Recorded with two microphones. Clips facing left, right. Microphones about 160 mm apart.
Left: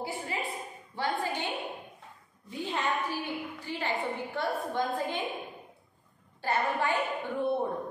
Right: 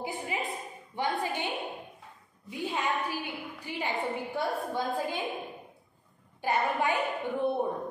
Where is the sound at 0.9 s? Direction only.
20° right (ahead or behind).